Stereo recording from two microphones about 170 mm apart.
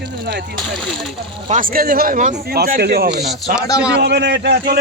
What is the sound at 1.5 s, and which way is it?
Speech, 50° right (ahead or behind).